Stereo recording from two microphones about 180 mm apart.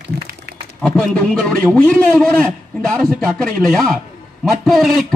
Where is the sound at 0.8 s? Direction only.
5° left (ahead or behind).